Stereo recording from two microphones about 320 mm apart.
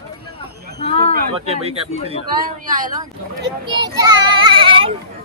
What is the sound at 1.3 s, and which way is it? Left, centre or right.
Speech, centre.